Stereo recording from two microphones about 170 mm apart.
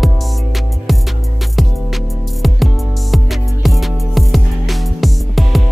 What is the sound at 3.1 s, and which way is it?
Music, centre (ahead or behind).